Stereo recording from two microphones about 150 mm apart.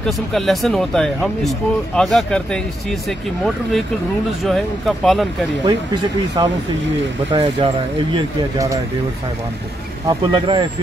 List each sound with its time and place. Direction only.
0.0 s speech: centre (ahead or behind)
6.4 s speech: 30° right (ahead or behind)
10.0 s speech: 35° right (ahead or behind)